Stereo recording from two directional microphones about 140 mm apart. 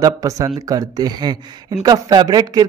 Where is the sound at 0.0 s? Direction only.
25° right (ahead or behind).